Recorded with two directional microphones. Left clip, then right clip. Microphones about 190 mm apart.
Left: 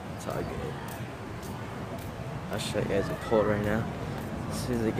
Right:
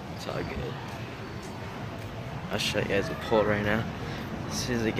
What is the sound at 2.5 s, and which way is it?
Speech, centre (ahead or behind).